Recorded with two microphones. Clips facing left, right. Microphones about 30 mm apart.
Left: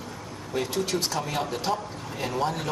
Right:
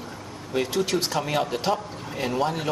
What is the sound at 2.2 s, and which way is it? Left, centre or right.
Speech, right.